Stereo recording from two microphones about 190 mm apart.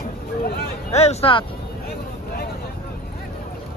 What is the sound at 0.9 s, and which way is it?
Speech, 35° left (ahead or behind).